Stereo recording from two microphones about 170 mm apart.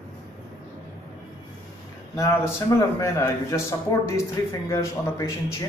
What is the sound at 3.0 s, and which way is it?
Speech, 15° left (ahead or behind).